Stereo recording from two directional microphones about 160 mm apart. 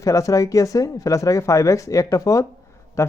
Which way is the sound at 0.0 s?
20° left (ahead or behind).